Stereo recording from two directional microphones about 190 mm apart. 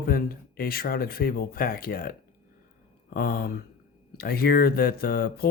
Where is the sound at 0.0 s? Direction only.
50° left (ahead or behind).